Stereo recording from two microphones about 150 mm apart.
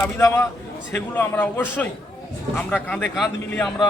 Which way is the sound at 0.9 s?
15° left (ahead or behind).